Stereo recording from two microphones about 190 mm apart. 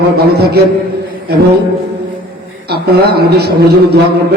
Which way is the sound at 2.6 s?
55° right (ahead or behind).